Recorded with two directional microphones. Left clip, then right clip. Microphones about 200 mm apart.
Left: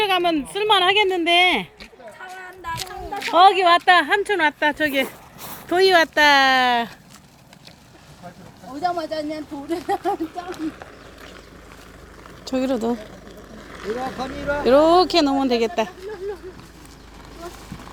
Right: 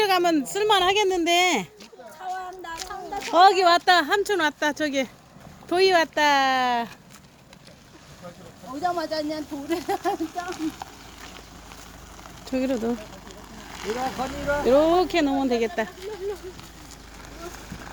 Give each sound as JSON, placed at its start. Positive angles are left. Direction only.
{"t": 0.0, "sound": "speech", "side_deg": -15}
{"t": 2.7, "sound": "a sound", "side_deg": 50}
{"t": 3.3, "sound": "speech", "side_deg": -10}
{"t": 5.6, "sound": "speech", "side_deg": 5}
{"t": 8.8, "sound": "speech", "side_deg": 15}
{"t": 9.6, "sound": "speech", "side_deg": -5}
{"t": 10.2, "sound": "speech", "side_deg": -50}
{"t": 12.5, "sound": "speech", "side_deg": 5}
{"t": 13.7, "sound": "vehicle", "side_deg": -25}
{"t": 14.2, "sound": "speech", "side_deg": 25}
{"t": 14.6, "sound": "speech", "side_deg": 10}